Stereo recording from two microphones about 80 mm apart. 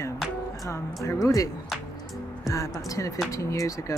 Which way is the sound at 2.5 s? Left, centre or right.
Left.